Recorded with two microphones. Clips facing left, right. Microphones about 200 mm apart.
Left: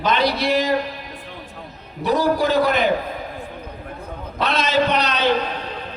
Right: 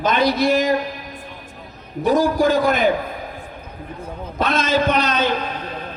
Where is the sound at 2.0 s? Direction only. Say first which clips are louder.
Right 2 dB; 45° right (ahead or behind).